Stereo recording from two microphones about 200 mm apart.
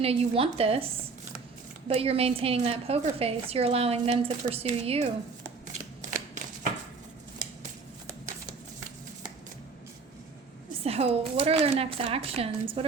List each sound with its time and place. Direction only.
0.0 s a woman's voice: 30° right (ahead or behind)
1.9 s a woman's voice: 30° right (ahead or behind)
6.0 s shuffling cards: 40° right (ahead or behind)
10.8 s a woman's voice: 30° right (ahead or behind)